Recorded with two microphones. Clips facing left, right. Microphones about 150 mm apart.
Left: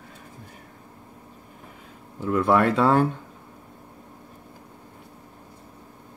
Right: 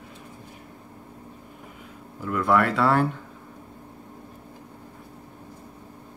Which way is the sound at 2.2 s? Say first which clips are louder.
Left 2 dB; 25° left (ahead or behind).